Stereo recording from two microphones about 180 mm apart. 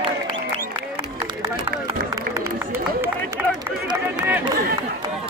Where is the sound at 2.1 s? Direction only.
15° right (ahead or behind).